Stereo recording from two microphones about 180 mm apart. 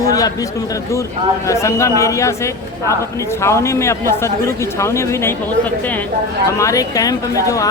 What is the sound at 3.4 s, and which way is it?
Speech, 15° left (ahead or behind).